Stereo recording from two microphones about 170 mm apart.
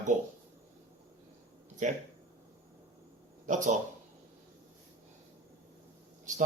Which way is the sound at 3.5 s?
45° right (ahead or behind).